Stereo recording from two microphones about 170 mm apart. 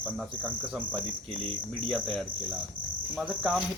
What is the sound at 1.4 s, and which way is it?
Speech, 30° right (ahead or behind).